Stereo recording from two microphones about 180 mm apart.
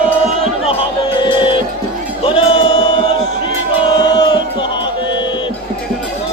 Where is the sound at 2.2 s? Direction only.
30° left (ahead or behind).